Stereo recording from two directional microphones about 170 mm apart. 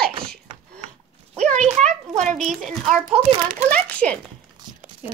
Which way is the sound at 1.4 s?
5° left (ahead or behind).